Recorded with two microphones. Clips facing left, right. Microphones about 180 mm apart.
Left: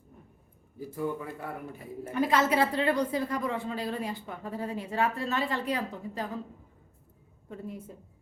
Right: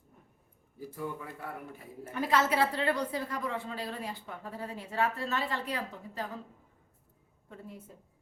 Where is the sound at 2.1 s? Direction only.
15° left (ahead or behind).